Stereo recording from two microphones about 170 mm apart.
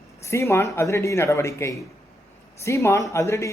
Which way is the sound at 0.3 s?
15° left (ahead or behind).